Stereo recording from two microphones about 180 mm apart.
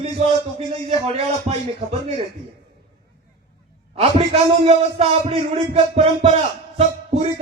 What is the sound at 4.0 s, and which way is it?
A man's voice, 35° right (ahead or behind).